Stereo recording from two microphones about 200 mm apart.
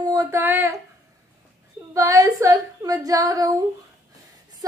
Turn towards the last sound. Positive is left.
turn(degrees=-20)  # may be behind; listen again after turning